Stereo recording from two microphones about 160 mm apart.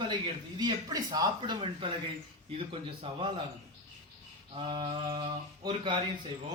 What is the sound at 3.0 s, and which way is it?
Speech, 35° right (ahead or behind).